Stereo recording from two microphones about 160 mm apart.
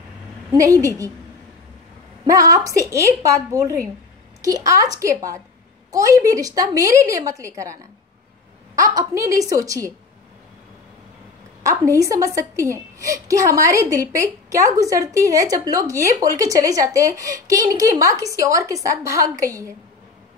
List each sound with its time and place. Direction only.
0.5 s a woman's voice: 20° right (ahead or behind)
2.2 s a woman's voice: 20° right (ahead or behind)
11.6 s a woman's voice: 20° right (ahead or behind)